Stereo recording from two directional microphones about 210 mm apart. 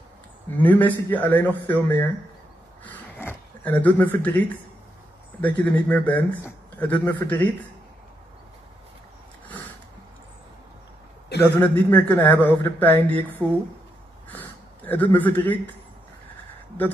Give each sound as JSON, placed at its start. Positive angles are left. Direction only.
{"t": 0.6, "sound": "a man's voice", "side_deg": 10}
{"t": 2.8, "sound": "a sound", "side_deg": 10}
{"t": 5.4, "sound": "a man's voice", "side_deg": 5}
{"t": 11.5, "sound": "a man's voice", "side_deg": 10}